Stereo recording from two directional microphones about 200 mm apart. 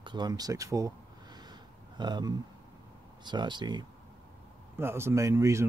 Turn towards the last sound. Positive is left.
turn(degrees=-15)  # may be behind; listen again after turning